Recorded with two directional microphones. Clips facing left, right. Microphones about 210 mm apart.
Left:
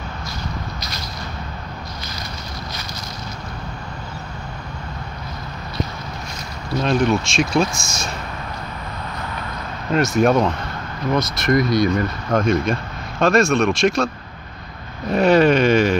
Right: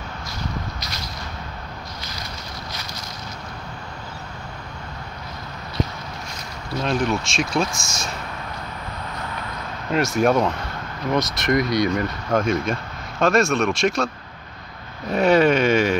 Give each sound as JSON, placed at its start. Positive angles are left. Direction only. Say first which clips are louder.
{"t": 6.8, "sound": "speech", "louder": "left 4 dB", "side_deg": 0}
{"t": 9.9, "sound": "speech", "louder": "left 2 dB", "side_deg": -10}
{"t": 15.1, "sound": "a sound", "louder": "left 2 dB", "side_deg": -5}